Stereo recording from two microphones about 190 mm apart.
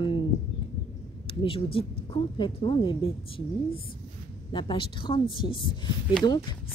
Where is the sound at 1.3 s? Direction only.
30° left (ahead or behind).